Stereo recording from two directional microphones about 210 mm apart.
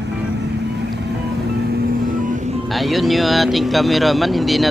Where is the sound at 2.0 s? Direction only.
40° right (ahead or behind).